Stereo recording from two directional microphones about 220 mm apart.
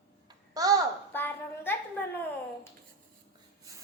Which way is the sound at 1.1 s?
10° left (ahead or behind).